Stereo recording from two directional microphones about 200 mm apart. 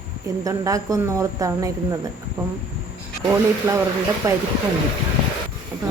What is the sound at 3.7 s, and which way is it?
Speech, 15° right (ahead or behind).